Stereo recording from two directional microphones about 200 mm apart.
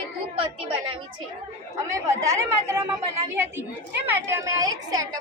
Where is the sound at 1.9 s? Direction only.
15° right (ahead or behind).